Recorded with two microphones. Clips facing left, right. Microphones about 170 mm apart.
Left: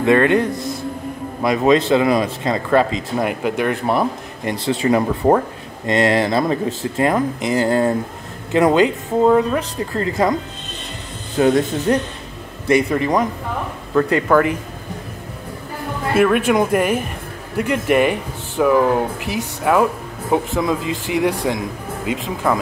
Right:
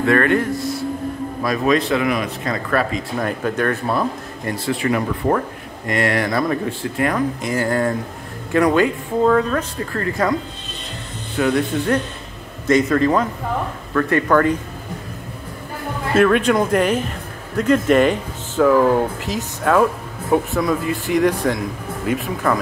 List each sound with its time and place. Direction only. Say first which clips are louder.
0.0 s speech: left 2 dB; 20° left (ahead or behind)
11.3 s speech: left 3 dB; 25° left (ahead or behind)
12.6 s speech: right 1 dB; 15° left (ahead or behind)
16.2 s speech: even; 10° left (ahead or behind)